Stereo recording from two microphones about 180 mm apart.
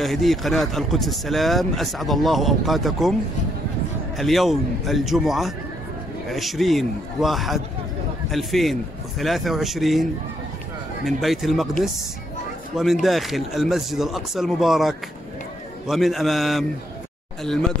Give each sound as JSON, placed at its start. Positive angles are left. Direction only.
{"t": 0.0, "sound": "speech", "side_deg": 0}
{"t": 4.2, "sound": "speech", "side_deg": 0}
{"t": 11.1, "sound": "speech", "side_deg": 0}
{"t": 12.7, "sound": "speech", "side_deg": 0}